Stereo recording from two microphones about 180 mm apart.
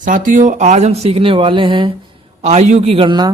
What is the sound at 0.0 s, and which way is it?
Speech, 45° right (ahead or behind).